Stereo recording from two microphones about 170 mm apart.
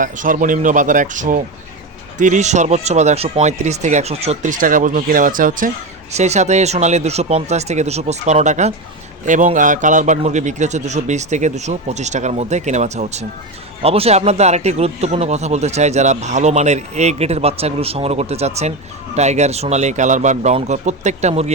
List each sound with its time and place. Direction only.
0.0 s a man's voice: 50° right (ahead or behind)